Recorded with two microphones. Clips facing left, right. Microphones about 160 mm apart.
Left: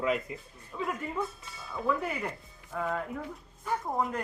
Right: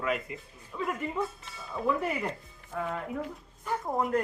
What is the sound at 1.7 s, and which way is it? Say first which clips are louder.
Speech: right 2 dB; 5° right (ahead or behind).